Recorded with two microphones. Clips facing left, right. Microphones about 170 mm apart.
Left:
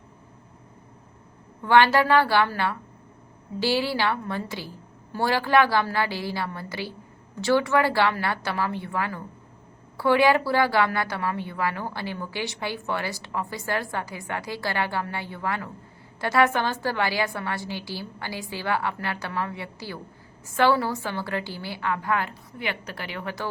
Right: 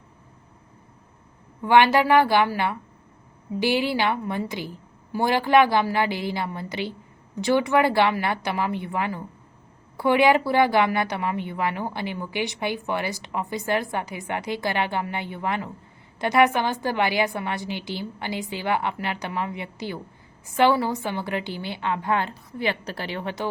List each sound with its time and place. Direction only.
1.6 s a woman's voice: 15° right (ahead or behind)